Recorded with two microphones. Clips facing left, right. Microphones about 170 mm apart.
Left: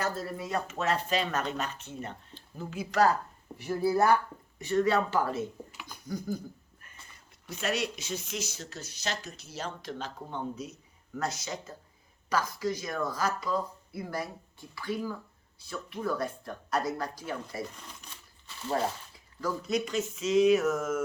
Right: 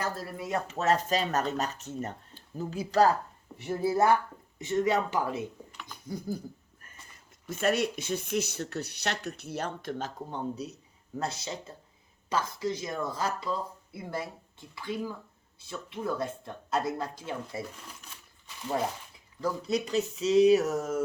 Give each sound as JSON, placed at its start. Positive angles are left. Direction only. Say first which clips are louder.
{"t": 0.7, "sound": "speech", "louder": "right 4 dB", "side_deg": -40}
{"t": 3.6, "sound": "speech", "louder": "even", "side_deg": -25}
{"t": 5.8, "sound": "a sound", "louder": "even", "side_deg": -30}
{"t": 7.4, "sound": "speech", "louder": "right 5 dB", "side_deg": -50}
{"t": 10.3, "sound": "speech", "louder": "even", "side_deg": -35}
{"t": 19.4, "sound": "speech", "louder": "right 1 dB", "side_deg": -30}